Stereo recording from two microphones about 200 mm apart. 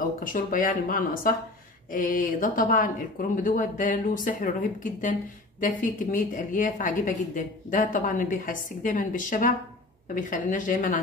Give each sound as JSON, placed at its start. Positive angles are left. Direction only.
{"t": 0.2, "sound": "speech", "side_deg": 40}